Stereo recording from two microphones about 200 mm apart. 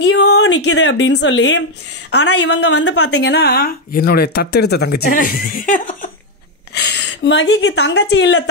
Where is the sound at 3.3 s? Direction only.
55° left (ahead or behind).